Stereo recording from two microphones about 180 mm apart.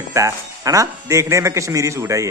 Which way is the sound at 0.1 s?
20° right (ahead or behind).